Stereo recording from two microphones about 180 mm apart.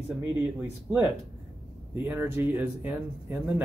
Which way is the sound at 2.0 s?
10° right (ahead or behind).